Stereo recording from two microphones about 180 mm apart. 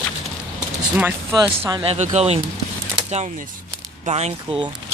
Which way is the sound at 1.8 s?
35° right (ahead or behind).